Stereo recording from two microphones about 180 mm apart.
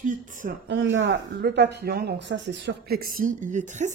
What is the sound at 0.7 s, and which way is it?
Speech, 90° right.